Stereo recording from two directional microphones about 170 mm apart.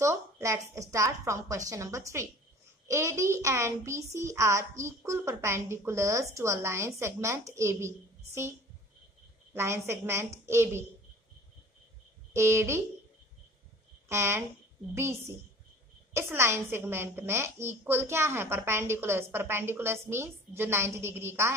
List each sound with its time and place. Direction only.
0.0 s a woman's voice: 15° right (ahead or behind)
12.4 s a woman's voice: 15° right (ahead or behind)
14.0 s a woman's voice: 15° right (ahead or behind)